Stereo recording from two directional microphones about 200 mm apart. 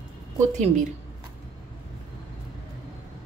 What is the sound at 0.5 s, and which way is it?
Speech, 35° right (ahead or behind).